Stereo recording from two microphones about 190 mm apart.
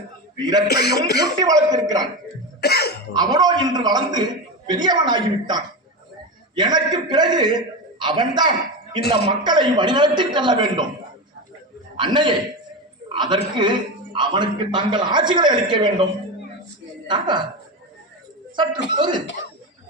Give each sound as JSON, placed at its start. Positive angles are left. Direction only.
{"t": 0.7, "sound": "a man's voice", "side_deg": 60}
{"t": 1.2, "sound": "a man's voice", "side_deg": -20}
{"t": 2.6, "sound": "cough", "side_deg": 55}
{"t": 3.1, "sound": "a man's voice", "side_deg": -20}
{"t": 9.0, "sound": "a man's voice", "side_deg": 60}
{"t": 9.3, "sound": "a man's voice", "side_deg": -25}
{"t": 11.9, "sound": "a man's voice", "side_deg": -25}
{"t": 17.1, "sound": "a man's voice", "side_deg": -25}
{"t": 18.5, "sound": "a man's voice", "side_deg": -25}